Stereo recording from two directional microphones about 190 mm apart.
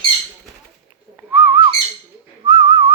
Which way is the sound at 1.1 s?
10° right (ahead or behind).